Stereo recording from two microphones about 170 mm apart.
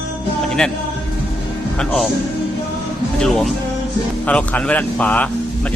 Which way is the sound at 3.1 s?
Centre (ahead or behind).